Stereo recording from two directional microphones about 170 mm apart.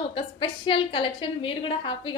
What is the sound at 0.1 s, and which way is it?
A woman's voice, 30° left (ahead or behind).